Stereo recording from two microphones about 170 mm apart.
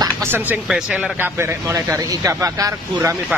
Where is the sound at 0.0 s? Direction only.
15° right (ahead or behind).